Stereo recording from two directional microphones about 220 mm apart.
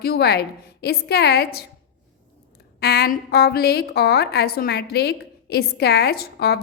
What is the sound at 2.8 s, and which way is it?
A woman's voice, 45° left (ahead or behind).